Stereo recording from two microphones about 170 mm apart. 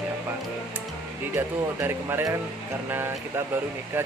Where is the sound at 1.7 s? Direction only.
15° right (ahead or behind).